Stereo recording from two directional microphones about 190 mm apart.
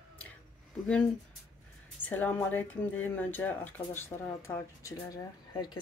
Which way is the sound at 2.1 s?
10° left (ahead or behind).